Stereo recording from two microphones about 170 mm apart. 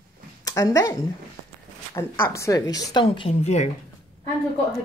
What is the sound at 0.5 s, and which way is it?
Speech, 20° left (ahead or behind).